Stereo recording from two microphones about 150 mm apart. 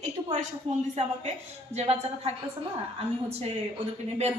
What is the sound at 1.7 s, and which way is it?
Speech, 45° right (ahead or behind).